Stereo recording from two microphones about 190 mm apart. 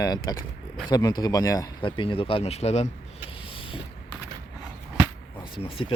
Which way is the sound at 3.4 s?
30° left (ahead or behind).